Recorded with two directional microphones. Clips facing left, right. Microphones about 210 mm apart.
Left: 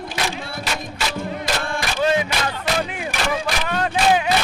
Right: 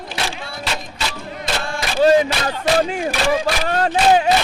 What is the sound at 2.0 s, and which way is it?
Music, 35° right (ahead or behind).